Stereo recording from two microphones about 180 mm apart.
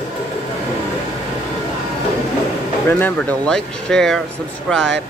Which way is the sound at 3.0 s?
5° left (ahead or behind).